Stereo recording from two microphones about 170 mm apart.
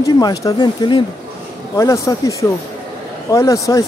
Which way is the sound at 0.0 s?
20° left (ahead or behind).